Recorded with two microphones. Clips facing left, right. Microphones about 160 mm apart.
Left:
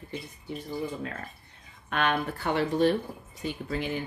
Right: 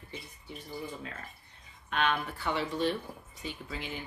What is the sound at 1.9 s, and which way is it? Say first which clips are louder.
Speech: left 3 dB; 50° left (ahead or behind).